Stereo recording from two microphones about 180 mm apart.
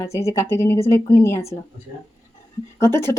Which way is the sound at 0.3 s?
15° left (ahead or behind).